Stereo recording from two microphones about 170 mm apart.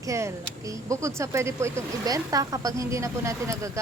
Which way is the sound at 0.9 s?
20° right (ahead or behind).